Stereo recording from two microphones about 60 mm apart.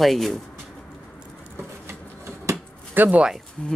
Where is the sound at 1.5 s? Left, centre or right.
Right.